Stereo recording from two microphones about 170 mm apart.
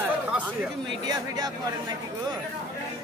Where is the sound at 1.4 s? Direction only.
20° right (ahead or behind).